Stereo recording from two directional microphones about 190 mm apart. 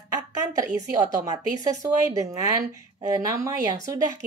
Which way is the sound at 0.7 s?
20° right (ahead or behind).